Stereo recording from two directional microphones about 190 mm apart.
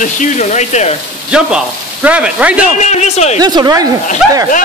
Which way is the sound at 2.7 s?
40° left (ahead or behind).